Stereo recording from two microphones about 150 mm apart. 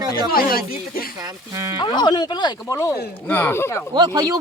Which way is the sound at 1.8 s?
30° left (ahead or behind).